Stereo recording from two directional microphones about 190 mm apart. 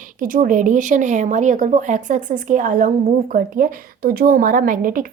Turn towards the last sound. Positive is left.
turn(degrees=-45)  # may be behind; listen again after turning